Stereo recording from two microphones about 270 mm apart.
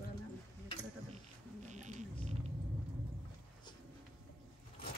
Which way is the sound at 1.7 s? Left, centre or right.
Right.